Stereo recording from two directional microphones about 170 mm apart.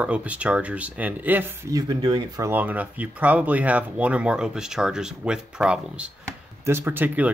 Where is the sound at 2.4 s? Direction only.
10° right (ahead or behind).